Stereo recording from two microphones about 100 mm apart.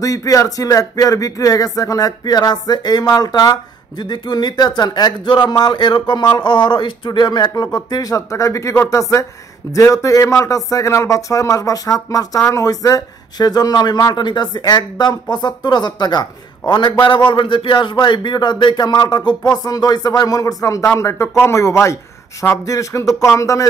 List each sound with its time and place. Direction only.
0.0 s speech: 35° left (ahead or behind)